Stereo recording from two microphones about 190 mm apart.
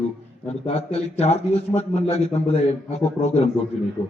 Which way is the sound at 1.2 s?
35° left (ahead or behind).